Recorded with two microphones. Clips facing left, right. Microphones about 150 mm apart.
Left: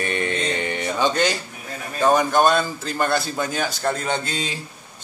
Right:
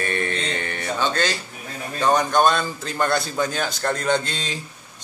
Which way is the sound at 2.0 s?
5° left (ahead or behind).